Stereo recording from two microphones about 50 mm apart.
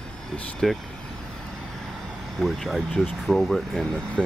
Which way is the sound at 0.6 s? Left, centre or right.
Centre.